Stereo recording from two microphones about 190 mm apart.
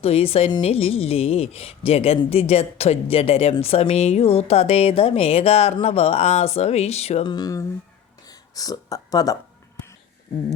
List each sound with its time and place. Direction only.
0.0 s a woman's voice: 30° left (ahead or behind)